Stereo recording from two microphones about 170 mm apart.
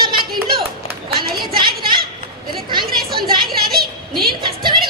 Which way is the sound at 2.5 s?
25° right (ahead or behind).